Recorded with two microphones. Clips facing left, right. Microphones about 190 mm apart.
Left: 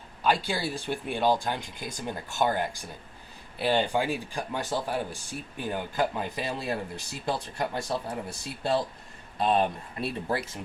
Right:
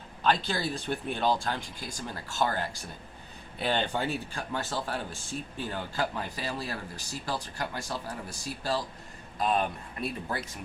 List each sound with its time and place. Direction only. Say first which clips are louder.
0.2 s speech: left 1 dB; 10° left (ahead or behind); by 10.4 s 30° left (ahead or behind)